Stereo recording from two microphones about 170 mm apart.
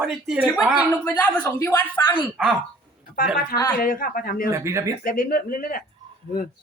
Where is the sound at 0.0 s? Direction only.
5° right (ahead or behind).